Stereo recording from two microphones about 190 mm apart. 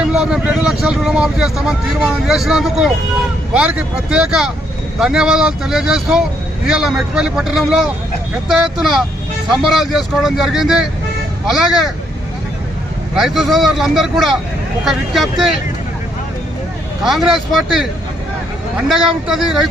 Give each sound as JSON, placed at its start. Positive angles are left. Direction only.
{"t": 0.0, "sound": "speech", "side_deg": -5}
{"t": 13.1, "sound": "speech", "side_deg": 0}
{"t": 17.0, "sound": "speech", "side_deg": 0}
{"t": 18.9, "sound": "speech", "side_deg": 0}